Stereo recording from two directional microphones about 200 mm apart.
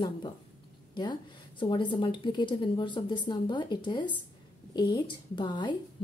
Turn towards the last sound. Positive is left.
turn(degrees=25)  # may be behind; listen again after turning